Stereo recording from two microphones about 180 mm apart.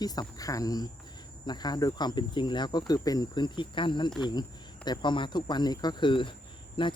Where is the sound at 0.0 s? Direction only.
20° left (ahead or behind).